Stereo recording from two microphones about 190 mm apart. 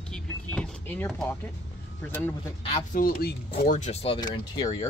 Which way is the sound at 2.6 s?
35° left (ahead or behind).